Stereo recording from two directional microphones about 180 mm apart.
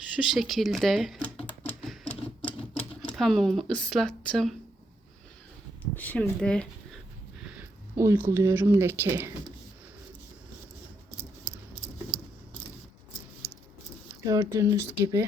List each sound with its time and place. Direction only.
0.2 s typewriter: centre (ahead or behind)
3.1 s speech: centre (ahead or behind)
5.8 s speech: 10° left (ahead or behind); by 9.3 s 15° right (ahead or behind)
13.4 s keys jangling: centre (ahead or behind)
14.3 s speech: 15° right (ahead or behind)